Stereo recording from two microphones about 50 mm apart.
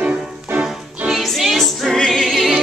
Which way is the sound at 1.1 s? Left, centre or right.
Centre.